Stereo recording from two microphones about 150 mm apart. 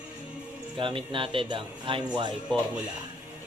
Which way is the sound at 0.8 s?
35° right (ahead or behind).